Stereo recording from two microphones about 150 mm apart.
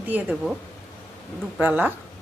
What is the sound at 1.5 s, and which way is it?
Speech, 10° right (ahead or behind).